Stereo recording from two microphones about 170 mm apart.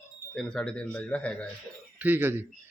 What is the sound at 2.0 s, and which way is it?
Speech, 10° right (ahead or behind).